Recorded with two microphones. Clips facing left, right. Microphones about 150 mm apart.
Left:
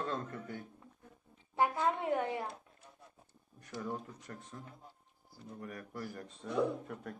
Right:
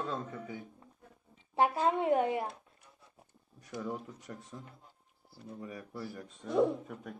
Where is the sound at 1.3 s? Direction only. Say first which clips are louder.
Right 3 dB; 20° right (ahead or behind).